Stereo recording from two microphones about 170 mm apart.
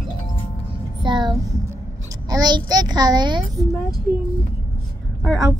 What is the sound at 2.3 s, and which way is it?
A child's voice, 25° right (ahead or behind).